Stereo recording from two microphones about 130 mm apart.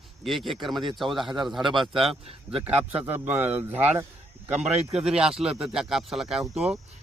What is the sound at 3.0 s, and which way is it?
Speech, 15° right (ahead or behind).